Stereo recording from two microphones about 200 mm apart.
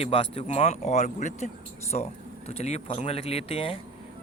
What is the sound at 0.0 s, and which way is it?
Speech, 30° left (ahead or behind).